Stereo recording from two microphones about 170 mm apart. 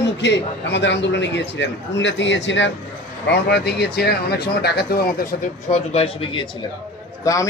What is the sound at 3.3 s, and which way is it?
Speech, 75° left (ahead or behind).